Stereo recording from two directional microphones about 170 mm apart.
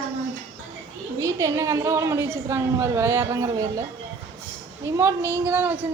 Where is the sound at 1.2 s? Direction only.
20° right (ahead or behind).